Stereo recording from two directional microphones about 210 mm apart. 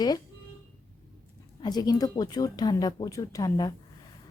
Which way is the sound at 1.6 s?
20° left (ahead or behind).